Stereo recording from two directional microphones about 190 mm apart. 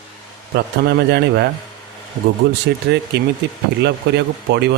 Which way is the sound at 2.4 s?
60° right (ahead or behind).